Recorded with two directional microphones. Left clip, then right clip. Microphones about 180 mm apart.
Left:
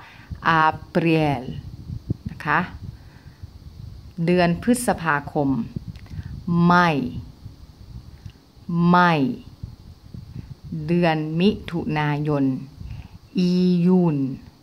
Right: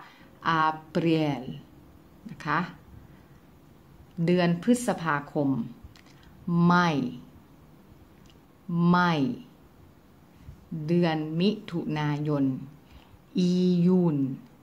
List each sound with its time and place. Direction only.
0.4 s speech: 25° left (ahead or behind)
4.2 s speech: 20° left (ahead or behind)
8.7 s speech: 25° left (ahead or behind)
10.9 s speech: 25° left (ahead or behind)